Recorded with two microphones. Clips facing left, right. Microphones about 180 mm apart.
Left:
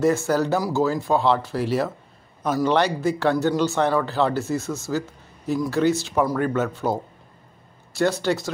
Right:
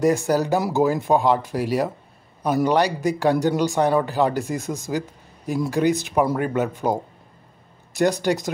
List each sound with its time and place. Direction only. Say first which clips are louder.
0.0 s speech: right 1 dB; 15° right (ahead or behind)